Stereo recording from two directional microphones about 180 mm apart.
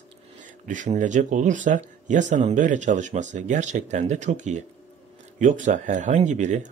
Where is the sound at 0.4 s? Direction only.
45° right (ahead or behind).